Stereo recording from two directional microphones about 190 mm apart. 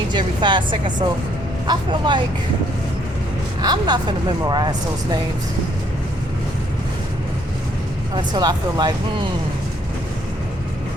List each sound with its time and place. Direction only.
0.1 s speech: 25° right (ahead or behind)
3.6 s speech: 20° right (ahead or behind)
8.1 s speech: 20° right (ahead or behind)